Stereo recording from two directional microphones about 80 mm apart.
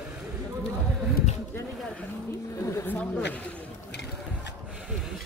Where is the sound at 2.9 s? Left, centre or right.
Centre.